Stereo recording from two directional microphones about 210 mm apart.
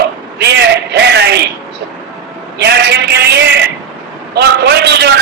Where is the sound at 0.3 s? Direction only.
55° right (ahead or behind).